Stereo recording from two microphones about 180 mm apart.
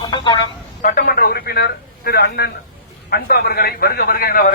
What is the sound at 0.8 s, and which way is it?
A man's voice, 50° left (ahead or behind).